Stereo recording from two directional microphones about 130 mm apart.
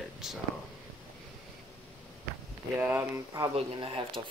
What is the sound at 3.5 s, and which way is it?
Speech, 45° right (ahead or behind).